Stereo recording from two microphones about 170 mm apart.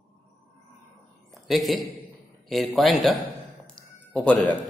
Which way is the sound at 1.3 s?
Centre (ahead or behind).